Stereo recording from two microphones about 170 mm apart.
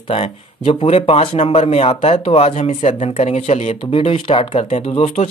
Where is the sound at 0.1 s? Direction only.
35° left (ahead or behind).